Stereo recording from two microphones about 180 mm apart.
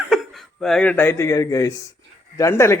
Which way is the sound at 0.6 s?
5° left (ahead or behind).